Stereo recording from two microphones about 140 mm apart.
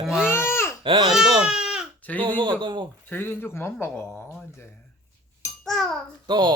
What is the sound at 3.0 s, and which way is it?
A man's voice, 15° left (ahead or behind).